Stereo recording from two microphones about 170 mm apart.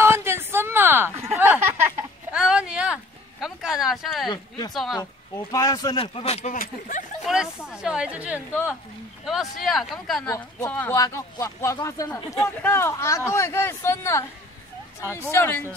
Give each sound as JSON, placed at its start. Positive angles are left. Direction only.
{"t": 0.0, "sound": "a sound", "side_deg": -15}
{"t": 4.3, "sound": "speech", "side_deg": 25}
{"t": 7.2, "sound": "speech", "side_deg": -5}
{"t": 10.7, "sound": "a man's voice", "side_deg": 15}